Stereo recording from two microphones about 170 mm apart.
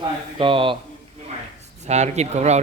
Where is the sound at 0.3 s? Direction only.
30° right (ahead or behind).